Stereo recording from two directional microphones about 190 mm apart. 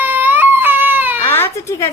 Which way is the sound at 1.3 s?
15° left (ahead or behind).